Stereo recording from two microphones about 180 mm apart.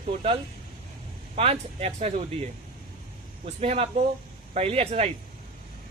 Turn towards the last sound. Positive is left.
turn(degrees=-35)  # may be behind; listen again after turning